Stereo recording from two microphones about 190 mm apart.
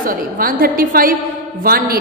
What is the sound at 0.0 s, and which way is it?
A woman's voice, 50° right (ahead or behind).